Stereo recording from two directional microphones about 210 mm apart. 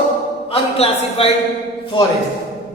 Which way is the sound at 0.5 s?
30° left (ahead or behind).